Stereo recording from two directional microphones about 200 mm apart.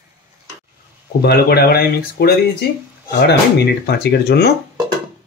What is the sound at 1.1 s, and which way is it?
Speech, 50° left (ahead or behind).